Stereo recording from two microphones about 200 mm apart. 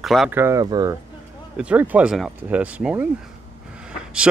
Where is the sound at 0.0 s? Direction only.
Centre (ahead or behind).